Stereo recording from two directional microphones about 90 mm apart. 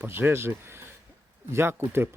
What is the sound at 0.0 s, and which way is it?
Speech, 25° right (ahead or behind).